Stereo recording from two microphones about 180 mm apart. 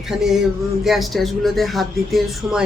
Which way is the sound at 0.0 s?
Centre (ahead or behind).